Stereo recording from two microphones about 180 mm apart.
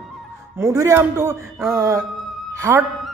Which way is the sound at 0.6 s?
15° right (ahead or behind).